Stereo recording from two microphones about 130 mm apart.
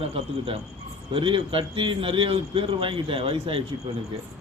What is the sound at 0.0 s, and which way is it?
A man's voice, 50° right (ahead or behind).